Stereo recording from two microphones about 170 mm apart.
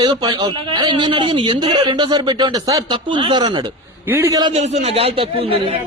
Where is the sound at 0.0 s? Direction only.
25° right (ahead or behind).